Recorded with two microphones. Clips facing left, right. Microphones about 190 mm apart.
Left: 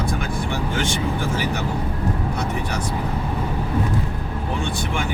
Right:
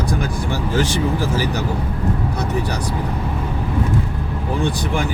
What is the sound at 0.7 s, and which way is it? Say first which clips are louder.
Speech: right 7 dB; 35° right (ahead or behind).